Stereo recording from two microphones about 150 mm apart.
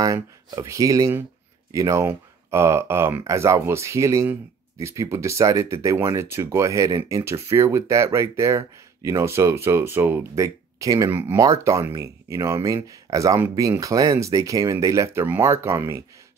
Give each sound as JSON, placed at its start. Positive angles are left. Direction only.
{"t": 0.0, "sound": "speech", "side_deg": -25}